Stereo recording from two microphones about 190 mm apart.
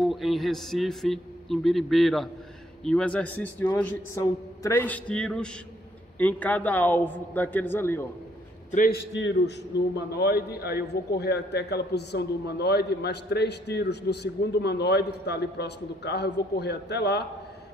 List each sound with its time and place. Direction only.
0.0 s a man's voice: centre (ahead or behind)
8.7 s a man's voice: 50° left (ahead or behind)
9.9 s a man's voice: 60° left (ahead or behind)